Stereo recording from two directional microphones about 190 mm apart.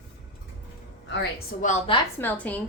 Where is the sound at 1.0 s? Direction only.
70° left (ahead or behind).